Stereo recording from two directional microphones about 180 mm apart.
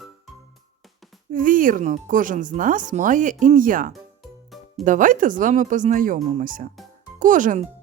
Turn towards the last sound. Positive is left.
turn(degrees=-45)  # may be behind; listen again after turning